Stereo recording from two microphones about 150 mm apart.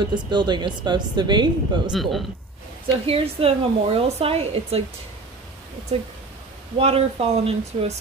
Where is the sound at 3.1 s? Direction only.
40° right (ahead or behind).